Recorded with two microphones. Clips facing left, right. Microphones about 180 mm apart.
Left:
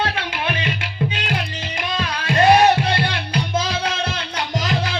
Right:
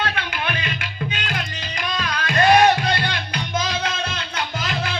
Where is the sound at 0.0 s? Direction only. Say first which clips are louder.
Left 2 dB; 30° left (ahead or behind).